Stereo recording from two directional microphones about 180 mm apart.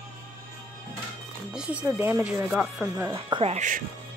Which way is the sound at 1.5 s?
5° right (ahead or behind).